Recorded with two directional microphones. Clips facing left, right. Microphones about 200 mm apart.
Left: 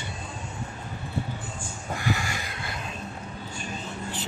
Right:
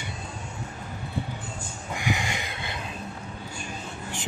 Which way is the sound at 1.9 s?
15° right (ahead or behind).